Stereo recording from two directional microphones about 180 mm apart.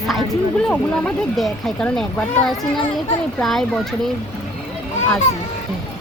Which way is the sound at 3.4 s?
Centre (ahead or behind).